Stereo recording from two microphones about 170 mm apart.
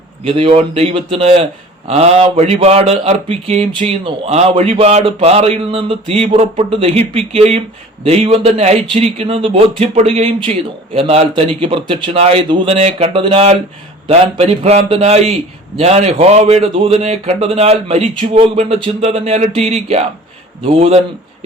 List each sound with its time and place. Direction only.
0.3 s speech: 35° right (ahead or behind)